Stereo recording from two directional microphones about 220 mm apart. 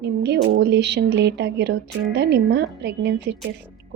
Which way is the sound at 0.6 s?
50° right (ahead or behind).